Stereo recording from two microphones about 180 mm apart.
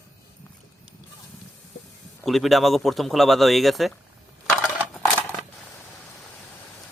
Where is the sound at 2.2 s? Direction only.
Centre (ahead or behind).